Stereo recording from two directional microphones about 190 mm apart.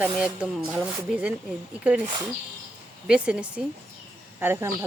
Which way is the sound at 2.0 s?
20° right (ahead or behind).